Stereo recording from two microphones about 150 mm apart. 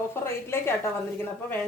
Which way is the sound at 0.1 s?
15° left (ahead or behind).